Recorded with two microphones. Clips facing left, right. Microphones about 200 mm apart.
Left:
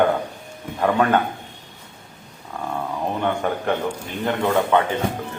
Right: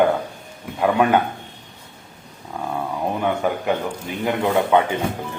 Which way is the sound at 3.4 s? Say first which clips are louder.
Right 1 dB; 5° right (ahead or behind).